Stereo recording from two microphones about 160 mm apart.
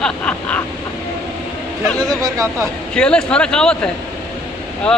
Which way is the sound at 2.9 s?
5° left (ahead or behind).